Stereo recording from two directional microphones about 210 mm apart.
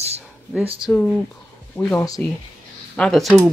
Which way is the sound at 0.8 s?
5° left (ahead or behind).